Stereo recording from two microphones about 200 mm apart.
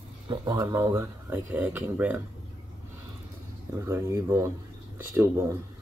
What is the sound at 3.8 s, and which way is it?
Speech, 15° right (ahead or behind).